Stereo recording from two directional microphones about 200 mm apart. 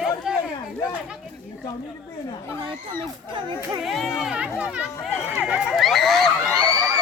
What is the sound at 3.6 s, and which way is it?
Speech, centre (ahead or behind).